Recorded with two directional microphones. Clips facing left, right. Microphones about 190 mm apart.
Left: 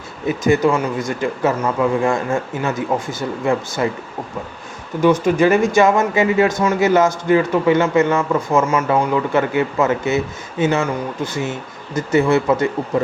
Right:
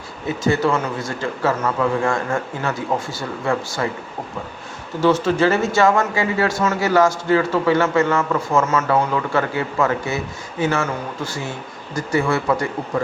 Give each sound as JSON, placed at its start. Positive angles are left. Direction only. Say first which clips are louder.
{"t": 0.4, "sound": "a man's voice", "louder": "left 3 dB", "side_deg": 20}
{"t": 4.9, "sound": "a man's voice", "louder": "left 2 dB", "side_deg": 15}